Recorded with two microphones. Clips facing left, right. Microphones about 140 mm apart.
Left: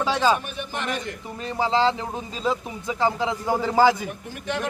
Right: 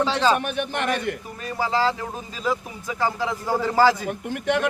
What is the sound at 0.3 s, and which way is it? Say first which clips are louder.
Speech: right 5 dB; 70° right (ahead or behind).